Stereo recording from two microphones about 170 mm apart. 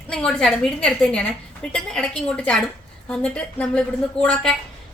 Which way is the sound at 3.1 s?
5° left (ahead or behind).